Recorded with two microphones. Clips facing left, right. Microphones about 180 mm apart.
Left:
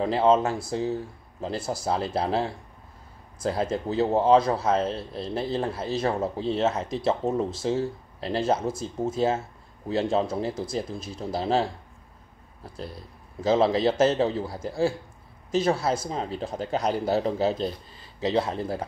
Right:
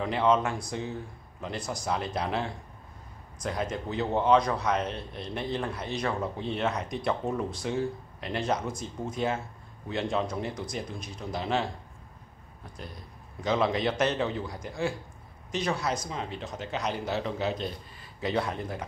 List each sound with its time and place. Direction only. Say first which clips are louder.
0.0 s speech: left 4 dB; 30° left (ahead or behind)
12.6 s speech: left 6 dB; 30° left (ahead or behind)